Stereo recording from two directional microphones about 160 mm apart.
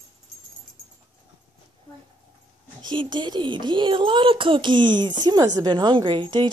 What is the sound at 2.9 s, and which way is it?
Speech, 30° right (ahead or behind).